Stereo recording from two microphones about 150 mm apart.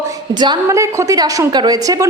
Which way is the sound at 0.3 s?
30° right (ahead or behind).